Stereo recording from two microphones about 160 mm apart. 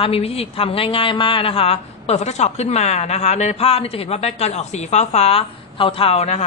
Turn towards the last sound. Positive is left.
turn(degrees=40)  # may be behind; listen again after turning